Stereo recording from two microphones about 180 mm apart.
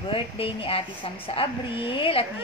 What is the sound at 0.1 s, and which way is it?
A woman's voice, 30° left (ahead or behind).